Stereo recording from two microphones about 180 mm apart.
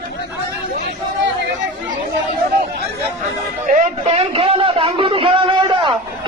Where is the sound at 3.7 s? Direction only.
40° right (ahead or behind).